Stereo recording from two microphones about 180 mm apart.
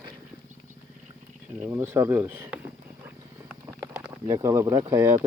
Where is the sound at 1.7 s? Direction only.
15° right (ahead or behind).